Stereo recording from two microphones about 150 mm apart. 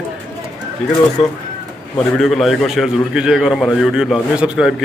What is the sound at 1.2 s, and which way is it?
Speech, 45° left (ahead or behind).